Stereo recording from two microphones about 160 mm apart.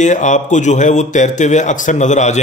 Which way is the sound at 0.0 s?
50° left (ahead or behind).